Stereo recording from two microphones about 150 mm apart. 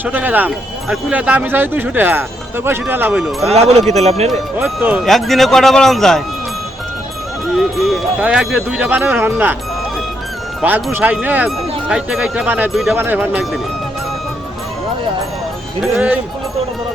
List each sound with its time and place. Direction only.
0.0 s speech: 10° right (ahead or behind)
3.5 s speech: 45° right (ahead or behind)
4.5 s speech: 10° right (ahead or behind)
7.5 s speech: centre (ahead or behind)
10.6 s speech: 5° right (ahead or behind)
13.0 s speech: 15° right (ahead or behind)
15.8 s speech: 5° right (ahead or behind)